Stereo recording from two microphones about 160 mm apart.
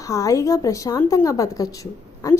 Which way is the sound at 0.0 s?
20° left (ahead or behind).